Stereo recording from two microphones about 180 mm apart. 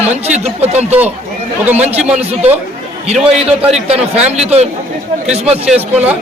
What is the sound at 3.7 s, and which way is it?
A man's voice, 35° right (ahead or behind).